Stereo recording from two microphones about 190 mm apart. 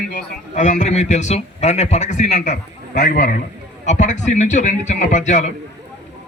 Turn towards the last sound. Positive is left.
turn(degrees=40)  # may be behind; listen again after turning